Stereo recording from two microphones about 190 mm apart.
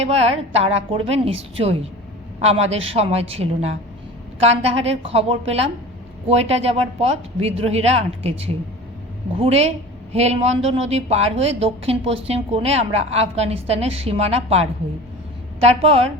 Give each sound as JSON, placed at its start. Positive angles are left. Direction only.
{"t": 0.0, "sound": "a woman's voice", "side_deg": -35}